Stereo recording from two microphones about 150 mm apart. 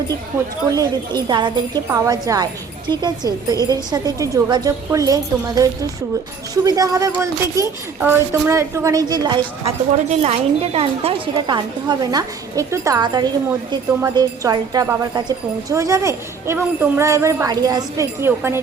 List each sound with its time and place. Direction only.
0.7 s a woman's voice: 25° right (ahead or behind)
10.1 s a woman's voice: 45° right (ahead or behind); by 18.6 s 15° right (ahead or behind)